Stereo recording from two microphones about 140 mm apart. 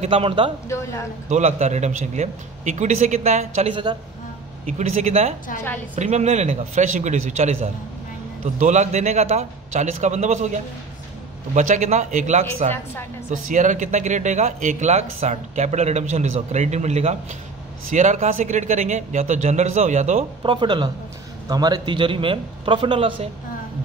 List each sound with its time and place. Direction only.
0.0 s speech: 40° right (ahead or behind)
1.3 s speech: 55° right (ahead or behind)
13.3 s speech: 65° right (ahead or behind)
20.4 s a man's voice: 35° right (ahead or behind)